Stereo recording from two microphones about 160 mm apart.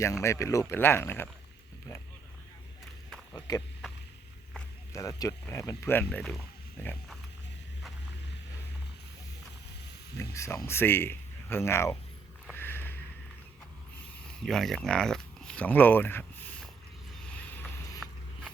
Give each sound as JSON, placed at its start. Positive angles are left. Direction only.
{"t": 0.0, "sound": "speech", "side_deg": 20}
{"t": 3.3, "sound": "a sound", "side_deg": 20}
{"t": 4.9, "sound": "speech", "side_deg": 20}
{"t": 10.2, "sound": "speech", "side_deg": 20}
{"t": 12.5, "sound": "a sound", "side_deg": 15}
{"t": 14.4, "sound": "speech", "side_deg": 0}
{"t": 17.5, "sound": "vehicle", "side_deg": 10}